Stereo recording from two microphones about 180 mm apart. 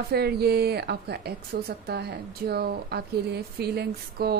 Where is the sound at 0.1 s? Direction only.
65° right (ahead or behind).